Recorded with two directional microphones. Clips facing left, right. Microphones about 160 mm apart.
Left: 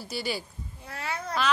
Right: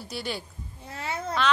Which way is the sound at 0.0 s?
5° left (ahead or behind).